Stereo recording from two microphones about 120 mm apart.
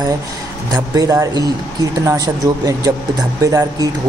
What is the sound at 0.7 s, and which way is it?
Speech, 30° right (ahead or behind).